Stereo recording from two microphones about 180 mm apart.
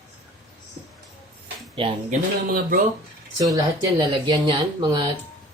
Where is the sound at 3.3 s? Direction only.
20° right (ahead or behind).